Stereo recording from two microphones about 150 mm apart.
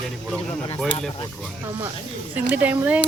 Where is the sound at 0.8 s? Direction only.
10° left (ahead or behind).